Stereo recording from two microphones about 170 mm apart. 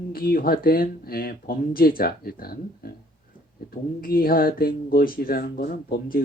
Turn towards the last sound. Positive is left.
turn(degrees=60)  # may be behind; listen again after turning